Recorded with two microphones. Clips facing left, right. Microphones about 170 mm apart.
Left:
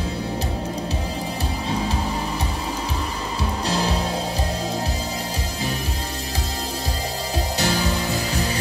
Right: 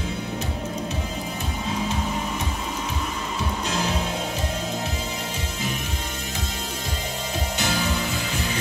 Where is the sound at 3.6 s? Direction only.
35° left (ahead or behind).